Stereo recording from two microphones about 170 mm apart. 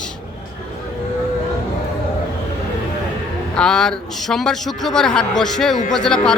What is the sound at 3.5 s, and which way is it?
A man's voice, 5° left (ahead or behind).